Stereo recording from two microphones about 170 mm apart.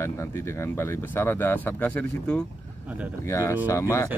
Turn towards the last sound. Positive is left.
turn(degrees=15)  # may be behind; listen again after turning